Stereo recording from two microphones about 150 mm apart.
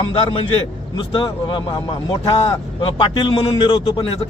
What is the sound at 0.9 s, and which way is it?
Speech, 35° left (ahead or behind).